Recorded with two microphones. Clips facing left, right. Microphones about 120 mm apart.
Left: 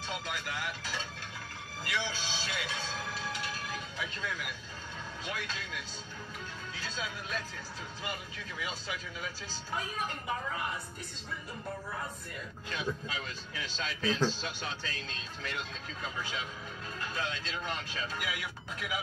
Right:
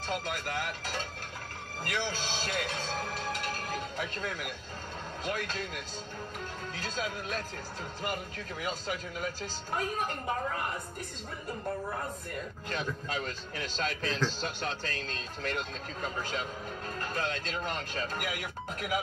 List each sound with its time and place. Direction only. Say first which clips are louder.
0.0 s speech: right 4 dB; 45° right (ahead or behind)
11.9 s speech: right 4 dB; 45° right (ahead or behind)